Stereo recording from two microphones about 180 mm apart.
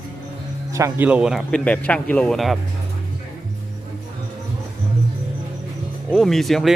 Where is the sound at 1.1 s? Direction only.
5° right (ahead or behind).